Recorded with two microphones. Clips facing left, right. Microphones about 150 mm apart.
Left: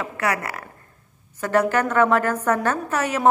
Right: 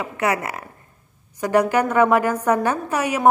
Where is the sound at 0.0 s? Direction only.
20° right (ahead or behind).